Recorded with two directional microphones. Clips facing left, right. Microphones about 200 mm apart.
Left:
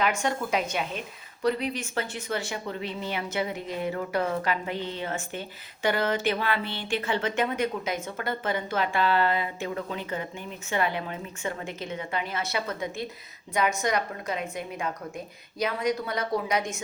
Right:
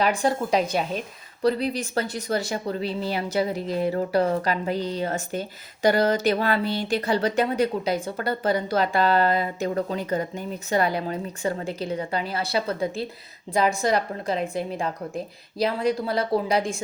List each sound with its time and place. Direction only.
0.0 s a woman's voice: 35° right (ahead or behind)